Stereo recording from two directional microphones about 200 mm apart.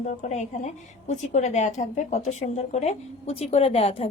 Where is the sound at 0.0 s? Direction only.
35° left (ahead or behind).